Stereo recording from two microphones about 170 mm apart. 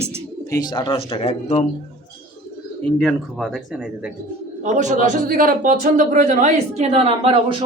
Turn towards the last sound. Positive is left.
turn(degrees=-35)  # may be behind; listen again after turning